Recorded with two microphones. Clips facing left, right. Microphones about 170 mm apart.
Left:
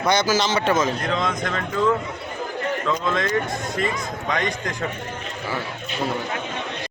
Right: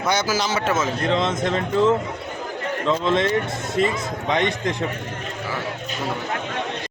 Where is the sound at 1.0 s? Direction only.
25° right (ahead or behind).